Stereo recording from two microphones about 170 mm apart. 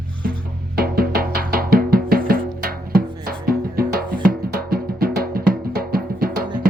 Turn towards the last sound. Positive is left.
turn(degrees=-60)  # may be behind; listen again after turning